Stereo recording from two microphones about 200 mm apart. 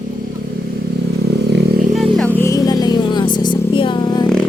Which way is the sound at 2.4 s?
15° left (ahead or behind).